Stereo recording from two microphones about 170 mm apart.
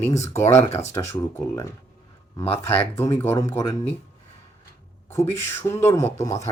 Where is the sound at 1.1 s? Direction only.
15° left (ahead or behind).